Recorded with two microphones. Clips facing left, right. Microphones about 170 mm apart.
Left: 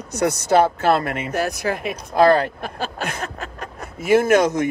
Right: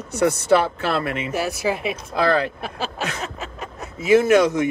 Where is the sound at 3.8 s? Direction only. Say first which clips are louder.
Right 1 dB; 55° left (ahead or behind).